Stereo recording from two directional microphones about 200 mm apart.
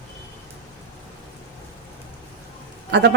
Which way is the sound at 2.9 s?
60° right (ahead or behind).